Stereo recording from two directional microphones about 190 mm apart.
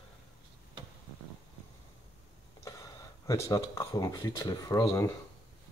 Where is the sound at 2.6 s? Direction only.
15° left (ahead or behind).